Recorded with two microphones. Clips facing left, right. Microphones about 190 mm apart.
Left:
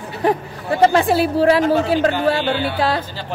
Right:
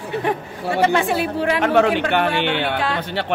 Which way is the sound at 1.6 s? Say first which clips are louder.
Left 1 dB; 70° right (ahead or behind).